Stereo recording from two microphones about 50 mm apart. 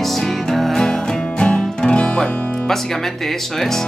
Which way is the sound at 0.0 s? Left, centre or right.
Centre.